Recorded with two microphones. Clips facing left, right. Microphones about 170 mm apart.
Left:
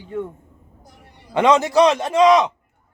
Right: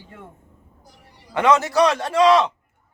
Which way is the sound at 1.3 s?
20° left (ahead or behind).